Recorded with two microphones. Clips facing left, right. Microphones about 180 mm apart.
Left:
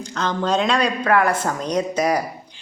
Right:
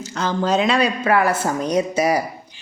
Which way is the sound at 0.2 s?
5° right (ahead or behind).